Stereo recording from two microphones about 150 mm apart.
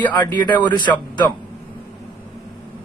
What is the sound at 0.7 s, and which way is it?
Speech, 30° left (ahead or behind).